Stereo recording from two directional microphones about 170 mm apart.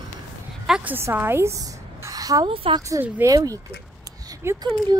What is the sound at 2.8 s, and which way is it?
Speech, 15° right (ahead or behind).